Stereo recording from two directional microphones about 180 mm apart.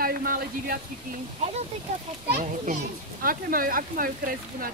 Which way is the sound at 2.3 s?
45° right (ahead or behind).